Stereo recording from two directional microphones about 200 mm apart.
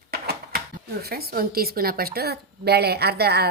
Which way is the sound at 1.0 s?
50° right (ahead or behind).